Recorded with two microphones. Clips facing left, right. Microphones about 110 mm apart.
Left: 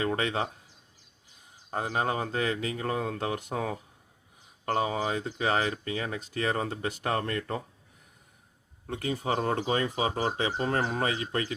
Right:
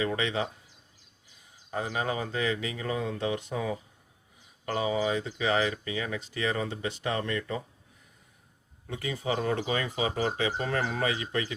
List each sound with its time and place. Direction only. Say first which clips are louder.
0.0 s speech: left 1 dB; 45° left (ahead or behind)
1.7 s speech: left 2 dB; 45° left (ahead or behind)
8.9 s speech: left 1 dB; 45° left (ahead or behind)